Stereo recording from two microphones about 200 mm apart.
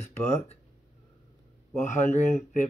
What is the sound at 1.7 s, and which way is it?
Speech, 35° left (ahead or behind).